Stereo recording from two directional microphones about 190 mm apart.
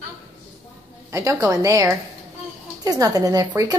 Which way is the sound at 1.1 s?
15° right (ahead or behind).